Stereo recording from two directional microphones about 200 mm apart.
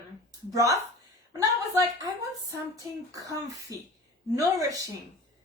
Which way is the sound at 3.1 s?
15° right (ahead or behind).